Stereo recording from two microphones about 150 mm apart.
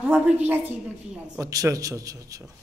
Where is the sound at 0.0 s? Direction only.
10° right (ahead or behind).